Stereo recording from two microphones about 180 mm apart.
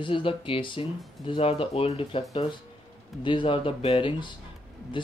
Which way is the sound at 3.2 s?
30° left (ahead or behind).